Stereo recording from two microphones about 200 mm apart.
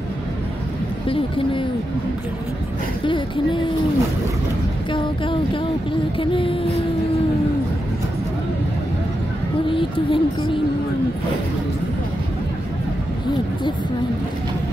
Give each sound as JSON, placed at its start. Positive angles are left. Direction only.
{"t": 1.0, "sound": "speech", "side_deg": 25}
{"t": 3.1, "sound": "speech", "side_deg": 25}
{"t": 4.9, "sound": "a sound", "side_deg": 25}
{"t": 6.1, "sound": "speech", "side_deg": 25}
{"t": 9.7, "sound": "speech", "side_deg": 25}